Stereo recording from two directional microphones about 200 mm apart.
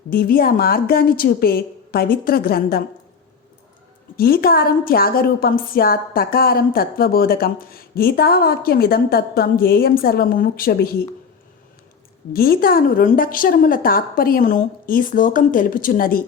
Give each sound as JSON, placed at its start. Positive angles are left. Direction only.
{"t": 0.1, "sound": "a woman's voice", "side_deg": 50}
{"t": 4.2, "sound": "a woman's voice", "side_deg": 50}
{"t": 12.3, "sound": "a woman's voice", "side_deg": 50}